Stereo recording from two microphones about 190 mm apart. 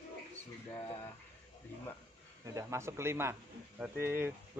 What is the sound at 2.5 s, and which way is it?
Speech, 15° right (ahead or behind).